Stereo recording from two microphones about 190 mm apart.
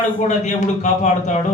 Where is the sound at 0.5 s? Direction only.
35° left (ahead or behind).